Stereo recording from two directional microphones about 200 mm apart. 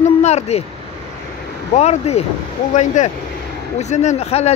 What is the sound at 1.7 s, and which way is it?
Speech, 35° left (ahead or behind).